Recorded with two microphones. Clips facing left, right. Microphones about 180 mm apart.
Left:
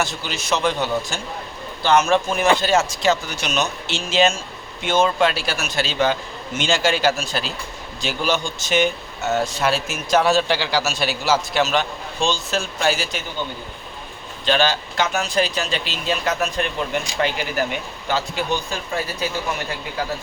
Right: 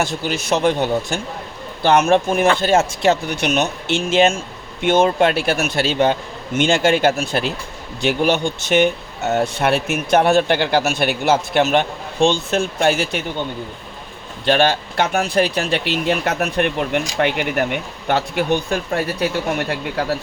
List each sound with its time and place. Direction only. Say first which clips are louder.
0.0 s speech: right 4 dB; 55° right (ahead or behind)
14.4 s speech: right 4 dB; 60° right (ahead or behind)